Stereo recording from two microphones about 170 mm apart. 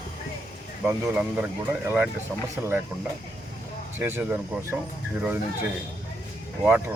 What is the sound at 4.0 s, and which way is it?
Speech, 10° right (ahead or behind).